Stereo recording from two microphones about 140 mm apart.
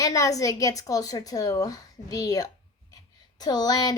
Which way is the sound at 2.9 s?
30° left (ahead or behind).